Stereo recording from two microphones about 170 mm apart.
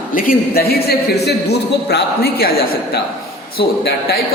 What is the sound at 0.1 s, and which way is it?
A man's voice, 55° left (ahead or behind).